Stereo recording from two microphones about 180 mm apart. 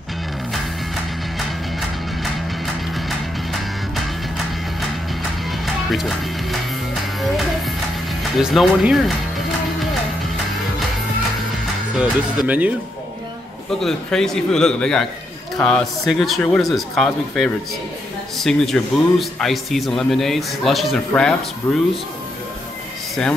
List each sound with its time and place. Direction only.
5.9 s speech: centre (ahead or behind)
8.2 s speech: centre (ahead or behind)
11.9 s speech: 5° right (ahead or behind)
13.7 s a man's voice: centre (ahead or behind)